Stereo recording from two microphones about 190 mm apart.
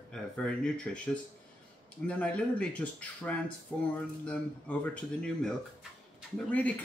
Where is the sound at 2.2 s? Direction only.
5° left (ahead or behind).